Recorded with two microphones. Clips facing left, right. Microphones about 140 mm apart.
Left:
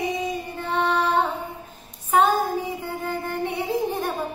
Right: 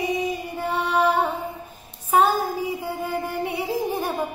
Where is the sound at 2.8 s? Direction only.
10° right (ahead or behind).